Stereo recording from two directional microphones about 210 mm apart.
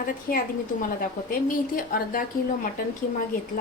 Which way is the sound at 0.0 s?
40° left (ahead or behind).